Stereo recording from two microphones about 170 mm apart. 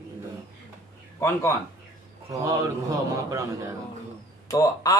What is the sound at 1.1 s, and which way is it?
Speech, 15° left (ahead or behind).